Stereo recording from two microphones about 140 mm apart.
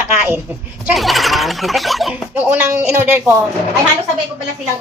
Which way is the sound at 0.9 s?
Centre (ahead or behind).